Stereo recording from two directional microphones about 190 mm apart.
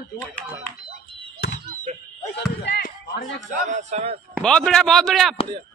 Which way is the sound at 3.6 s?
35° right (ahead or behind).